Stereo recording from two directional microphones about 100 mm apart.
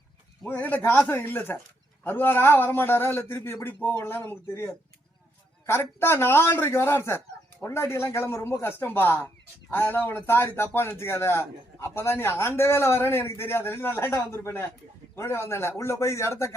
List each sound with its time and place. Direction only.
0.4 s a man's voice: 15° left (ahead or behind)